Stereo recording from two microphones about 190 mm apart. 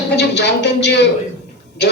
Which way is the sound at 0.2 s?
65° left (ahead or behind).